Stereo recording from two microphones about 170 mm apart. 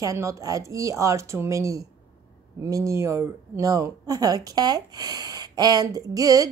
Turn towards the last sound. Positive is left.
turn(degrees=-20)  # may be behind; listen again after turning